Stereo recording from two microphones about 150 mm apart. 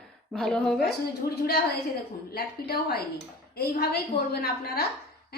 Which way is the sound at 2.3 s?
90° left.